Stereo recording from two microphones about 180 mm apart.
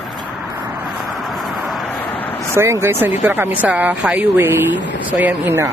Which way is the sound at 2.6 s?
15° right (ahead or behind).